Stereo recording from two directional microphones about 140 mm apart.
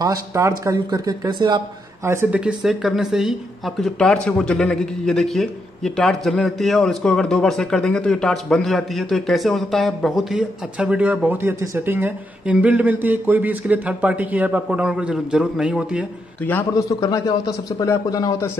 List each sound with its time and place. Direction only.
0.0 s speech: 25° right (ahead or behind)
2.0 s speech: 20° right (ahead or behind)
2.4 s speech: centre (ahead or behind)
16.7 s speech: 25° left (ahead or behind)